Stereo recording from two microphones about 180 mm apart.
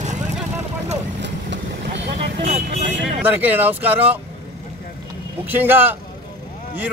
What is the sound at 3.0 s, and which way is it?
Speech, 10° right (ahead or behind).